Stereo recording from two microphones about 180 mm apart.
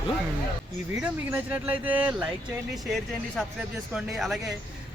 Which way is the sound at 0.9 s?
10° right (ahead or behind).